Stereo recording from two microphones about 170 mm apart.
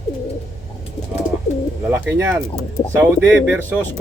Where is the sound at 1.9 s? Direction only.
10° right (ahead or behind).